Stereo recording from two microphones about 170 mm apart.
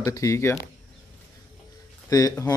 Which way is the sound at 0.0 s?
20° left (ahead or behind).